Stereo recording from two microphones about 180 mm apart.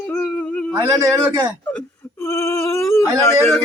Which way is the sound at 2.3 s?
15° left (ahead or behind).